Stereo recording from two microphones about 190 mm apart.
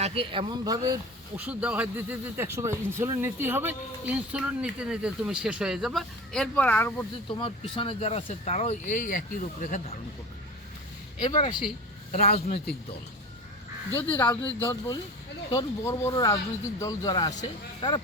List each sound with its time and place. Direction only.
0.0 s speech: 30° right (ahead or behind)
1.5 s speech: 5° right (ahead or behind); by 7.1 s 10° left (ahead or behind)
7.3 s speech: 30° left (ahead or behind)
11.3 s speech: 25° left (ahead or behind)
13.9 s speech: 10° left (ahead or behind)